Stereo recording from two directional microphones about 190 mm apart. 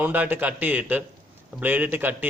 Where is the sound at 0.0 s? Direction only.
10° right (ahead or behind).